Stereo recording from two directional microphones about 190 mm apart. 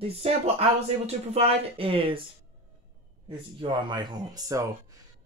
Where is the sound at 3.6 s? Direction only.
25° right (ahead or behind).